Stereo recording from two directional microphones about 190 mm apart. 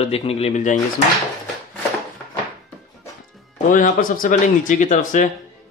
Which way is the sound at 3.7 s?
45° left (ahead or behind).